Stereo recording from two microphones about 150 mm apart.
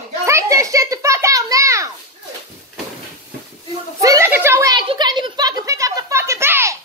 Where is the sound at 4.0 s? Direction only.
20° right (ahead or behind).